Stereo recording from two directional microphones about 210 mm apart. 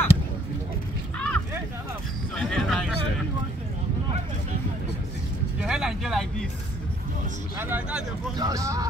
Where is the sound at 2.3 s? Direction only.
5° left (ahead or behind).